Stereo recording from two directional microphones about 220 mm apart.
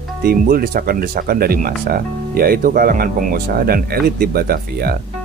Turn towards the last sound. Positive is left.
turn(degrees=-45)  # may be behind; listen again after turning